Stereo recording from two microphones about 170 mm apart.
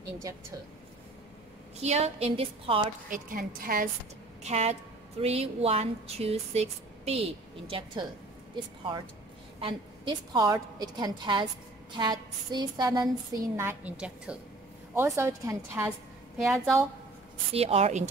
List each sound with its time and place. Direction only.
1.8 s speech: 40° right (ahead or behind)
3.1 s a woman's voice: 55° right (ahead or behind)
4.4 s speech: 40° right (ahead or behind)
7.7 s a woman's voice: 25° right (ahead or behind); by 14.4 s 5° right (ahead or behind)
15.0 s a woman's voice: 15° right (ahead or behind)
16.3 s a woman's voice: centre (ahead or behind)
17.5 s speech: 35° right (ahead or behind)